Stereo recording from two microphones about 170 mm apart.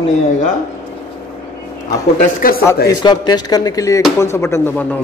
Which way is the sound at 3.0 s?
25° left (ahead or behind).